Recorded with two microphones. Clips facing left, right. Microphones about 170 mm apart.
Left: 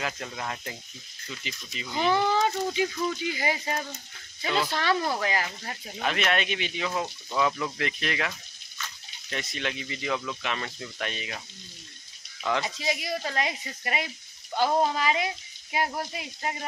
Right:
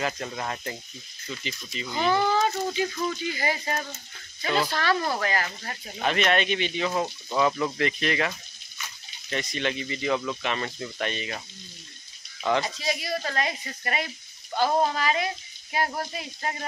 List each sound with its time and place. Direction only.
0.0 s speech: centre (ahead or behind)
2.1 s speech: 15° left (ahead or behind)
4.6 s speech: 20° left (ahead or behind)
5.9 s speech: centre (ahead or behind)
6.9 s speech: 10° right (ahead or behind)
8.3 s a sound: 10° right (ahead or behind)
9.3 s speech: centre (ahead or behind)
12.6 s speech: 20° left (ahead or behind)